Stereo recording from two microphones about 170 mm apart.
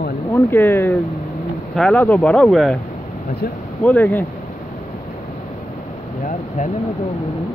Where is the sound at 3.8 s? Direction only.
10° left (ahead or behind).